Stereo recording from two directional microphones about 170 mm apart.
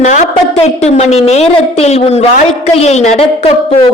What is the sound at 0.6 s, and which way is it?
A woman's voice, 40° left (ahead or behind).